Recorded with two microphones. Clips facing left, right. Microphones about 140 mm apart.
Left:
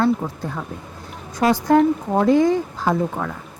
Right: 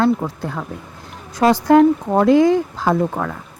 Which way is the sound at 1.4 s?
85° right.